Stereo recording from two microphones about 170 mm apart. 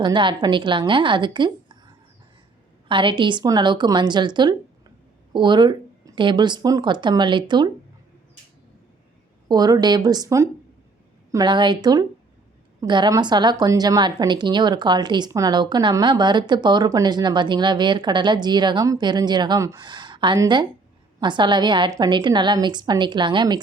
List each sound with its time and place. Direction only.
0.0 s a woman's voice: 30° right (ahead or behind)
2.9 s a woman's voice: 30° right (ahead or behind)
9.5 s a woman's voice: 25° right (ahead or behind)